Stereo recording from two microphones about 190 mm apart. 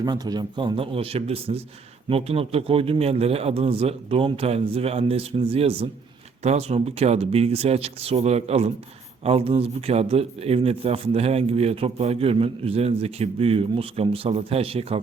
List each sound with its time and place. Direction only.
0.0 s a man's voice: 20° right (ahead or behind)